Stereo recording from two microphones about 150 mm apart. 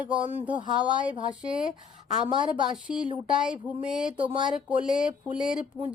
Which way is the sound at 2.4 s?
5° right (ahead or behind).